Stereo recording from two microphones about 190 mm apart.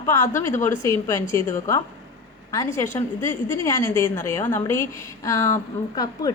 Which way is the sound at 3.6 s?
15° left (ahead or behind).